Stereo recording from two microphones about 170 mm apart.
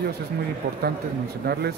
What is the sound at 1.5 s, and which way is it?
Speech, 70° right (ahead or behind).